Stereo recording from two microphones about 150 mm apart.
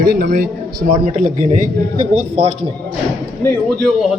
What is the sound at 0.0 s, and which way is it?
Speech, 85° right.